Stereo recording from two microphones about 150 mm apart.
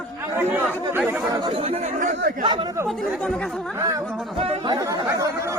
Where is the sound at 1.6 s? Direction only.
55° right (ahead or behind).